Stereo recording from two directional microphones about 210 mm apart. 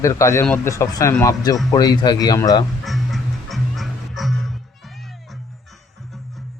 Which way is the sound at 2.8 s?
Centre (ahead or behind).